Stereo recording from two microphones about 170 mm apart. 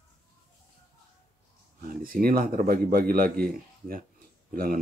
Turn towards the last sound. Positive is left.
turn(degrees=-60)  # may be behind; listen again after turning